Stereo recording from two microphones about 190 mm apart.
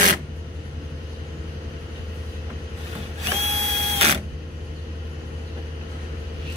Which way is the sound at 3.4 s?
35° right (ahead or behind).